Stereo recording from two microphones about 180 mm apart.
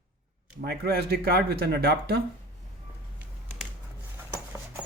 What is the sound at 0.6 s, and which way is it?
Speech, 60° right (ahead or behind).